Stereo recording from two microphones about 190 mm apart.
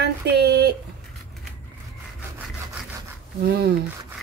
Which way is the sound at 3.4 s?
55° right (ahead or behind).